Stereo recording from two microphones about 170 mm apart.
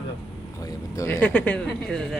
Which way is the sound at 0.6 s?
15° left (ahead or behind).